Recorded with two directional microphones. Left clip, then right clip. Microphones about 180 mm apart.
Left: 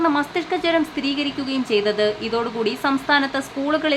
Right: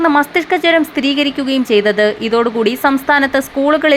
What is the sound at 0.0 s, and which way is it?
A woman's voice, 25° right (ahead or behind).